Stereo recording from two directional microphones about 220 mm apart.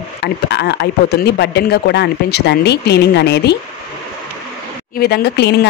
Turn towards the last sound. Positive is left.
turn(degrees=50)  # may be behind; listen again after turning